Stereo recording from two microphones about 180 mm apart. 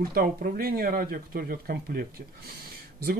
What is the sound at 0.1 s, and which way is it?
Speech, 55° right (ahead or behind).